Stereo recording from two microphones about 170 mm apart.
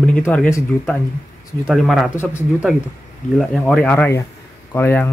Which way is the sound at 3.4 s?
5° left (ahead or behind).